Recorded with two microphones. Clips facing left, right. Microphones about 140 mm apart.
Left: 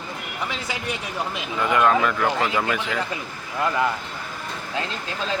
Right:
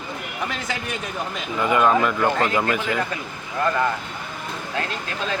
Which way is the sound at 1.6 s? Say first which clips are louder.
Right 1 dB; 5° right (ahead or behind).